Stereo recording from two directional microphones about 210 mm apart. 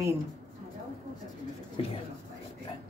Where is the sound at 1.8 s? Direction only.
25° left (ahead or behind).